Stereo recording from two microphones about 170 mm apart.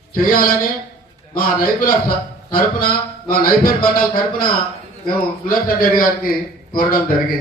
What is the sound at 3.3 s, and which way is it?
A man's voice, 60° left (ahead or behind).